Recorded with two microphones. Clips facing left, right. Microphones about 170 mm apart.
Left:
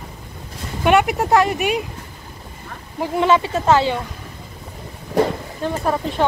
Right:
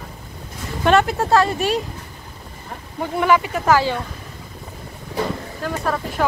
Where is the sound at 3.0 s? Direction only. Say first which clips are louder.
Left 1 dB; 25° left (ahead or behind).